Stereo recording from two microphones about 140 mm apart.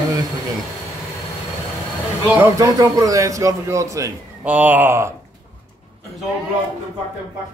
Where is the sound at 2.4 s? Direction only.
25° right (ahead or behind).